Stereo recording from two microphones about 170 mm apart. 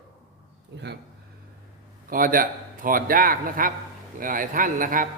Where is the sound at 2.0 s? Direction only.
55° right (ahead or behind).